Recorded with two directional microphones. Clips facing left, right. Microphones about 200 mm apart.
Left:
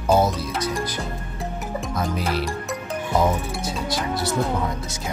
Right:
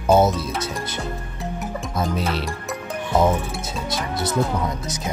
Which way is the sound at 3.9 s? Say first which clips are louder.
Right 1 dB; 20° right (ahead or behind).